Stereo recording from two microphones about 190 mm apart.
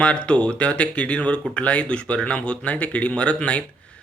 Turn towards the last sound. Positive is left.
turn(degrees=5)  # may be behind; listen again after turning